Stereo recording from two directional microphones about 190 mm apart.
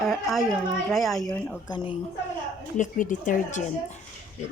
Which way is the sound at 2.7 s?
45° left (ahead or behind).